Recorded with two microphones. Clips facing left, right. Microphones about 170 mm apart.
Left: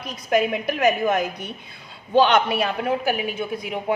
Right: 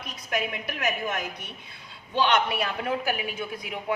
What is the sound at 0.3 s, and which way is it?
A woman's voice, 40° left (ahead or behind).